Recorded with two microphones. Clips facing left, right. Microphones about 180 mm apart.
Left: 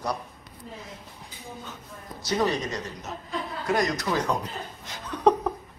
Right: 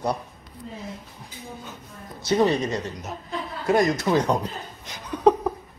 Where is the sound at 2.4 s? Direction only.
25° right (ahead or behind).